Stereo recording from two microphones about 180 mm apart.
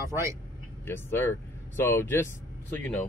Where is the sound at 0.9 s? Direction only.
10° left (ahead or behind).